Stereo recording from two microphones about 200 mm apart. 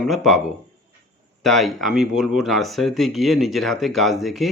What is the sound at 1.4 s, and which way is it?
Speech, centre (ahead or behind).